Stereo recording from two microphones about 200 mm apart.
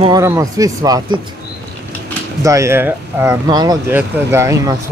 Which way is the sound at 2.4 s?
15° right (ahead or behind).